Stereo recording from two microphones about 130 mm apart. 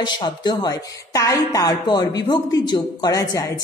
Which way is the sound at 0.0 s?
35° left (ahead or behind).